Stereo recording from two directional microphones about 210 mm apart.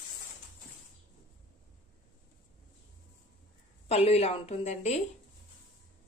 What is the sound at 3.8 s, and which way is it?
A woman's voice, 30° left (ahead or behind).